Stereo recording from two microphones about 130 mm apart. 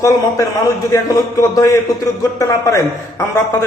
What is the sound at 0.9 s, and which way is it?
Speech, 25° left (ahead or behind).